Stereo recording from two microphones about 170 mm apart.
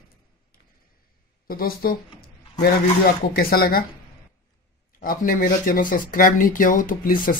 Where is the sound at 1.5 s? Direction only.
60° left (ahead or behind).